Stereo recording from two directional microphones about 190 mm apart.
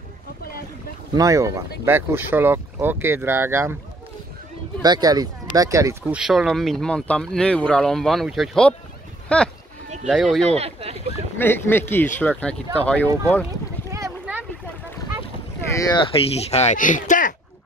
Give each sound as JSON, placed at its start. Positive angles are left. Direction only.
{"t": 1.1, "sound": "speech", "side_deg": -15}
{"t": 4.8, "sound": "speech", "side_deg": -20}
{"t": 6.1, "sound": "speech", "side_deg": 0}
{"t": 10.4, "sound": "speech", "side_deg": -35}
{"t": 11.3, "sound": "speech", "side_deg": 10}
{"t": 13.9, "sound": "a sound", "side_deg": -10}
{"t": 15.9, "sound": "speech", "side_deg": 30}